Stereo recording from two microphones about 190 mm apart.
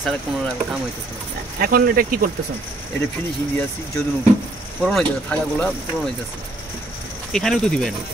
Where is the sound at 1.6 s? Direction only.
50° right (ahead or behind).